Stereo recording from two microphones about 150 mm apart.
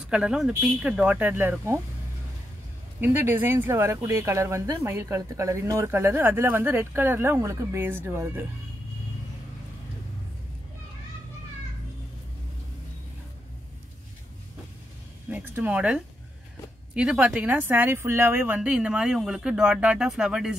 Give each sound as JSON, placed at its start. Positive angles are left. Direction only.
{"t": 0.0, "sound": "speech", "side_deg": -5}
{"t": 3.0, "sound": "speech", "side_deg": -15}
{"t": 15.2, "sound": "speech", "side_deg": -10}